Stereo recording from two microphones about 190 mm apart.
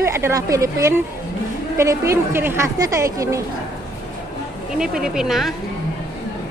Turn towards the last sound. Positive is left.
turn(degrees=0)  # may be behind; listen again after turning